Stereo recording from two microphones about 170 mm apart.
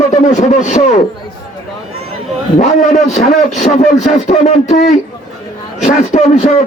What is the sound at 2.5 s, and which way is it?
A man's voice, 45° left (ahead or behind).